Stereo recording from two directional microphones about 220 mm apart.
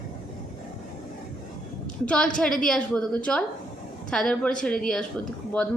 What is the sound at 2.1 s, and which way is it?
A woman's voice, 5° left (ahead or behind).